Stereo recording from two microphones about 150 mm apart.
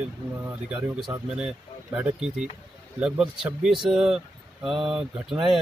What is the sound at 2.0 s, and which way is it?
Speech, 5° right (ahead or behind).